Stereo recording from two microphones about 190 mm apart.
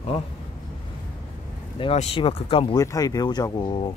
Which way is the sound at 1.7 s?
30° left (ahead or behind).